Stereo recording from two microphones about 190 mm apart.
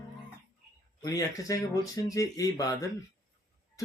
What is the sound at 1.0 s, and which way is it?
Speech, 20° left (ahead or behind).